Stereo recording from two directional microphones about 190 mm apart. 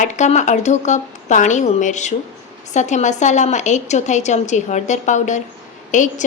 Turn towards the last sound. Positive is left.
turn(degrees=40)  # may be behind; listen again after turning